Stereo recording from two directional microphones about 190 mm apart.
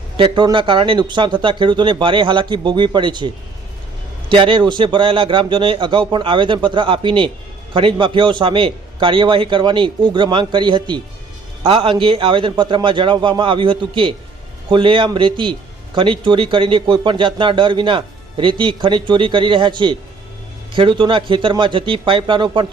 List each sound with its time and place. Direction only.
0.2 s speech: 25° right (ahead or behind)